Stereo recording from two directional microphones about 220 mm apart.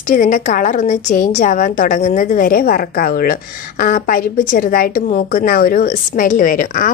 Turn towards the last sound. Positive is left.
turn(degrees=40)  # may be behind; listen again after turning